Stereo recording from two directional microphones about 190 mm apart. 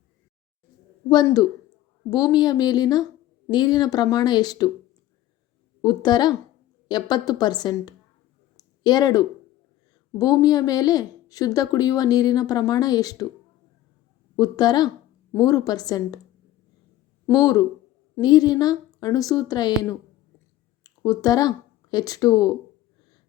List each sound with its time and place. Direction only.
1.1 s a woman's voice: 20° left (ahead or behind)
5.8 s a woman's voice: 25° left (ahead or behind)
8.5 s a sound: 20° left (ahead or behind)
10.2 s a woman's voice: 20° left (ahead or behind)
14.3 s a woman's voice: 20° left (ahead or behind)
17.2 s a woman's voice: 20° left (ahead or behind)